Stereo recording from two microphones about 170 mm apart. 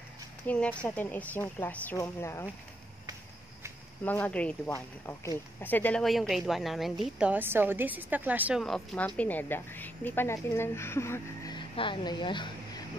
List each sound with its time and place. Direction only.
0.5 s a woman's voice: 10° left (ahead or behind)
4.0 s a woman's voice: 10° left (ahead or behind); by 8.6 s 10° right (ahead or behind)
8.6 s a woman's voice: 5° left (ahead or behind)
11.5 s a sound: 30° left (ahead or behind)